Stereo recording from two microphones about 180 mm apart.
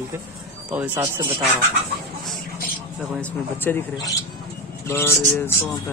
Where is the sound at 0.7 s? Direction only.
10° right (ahead or behind).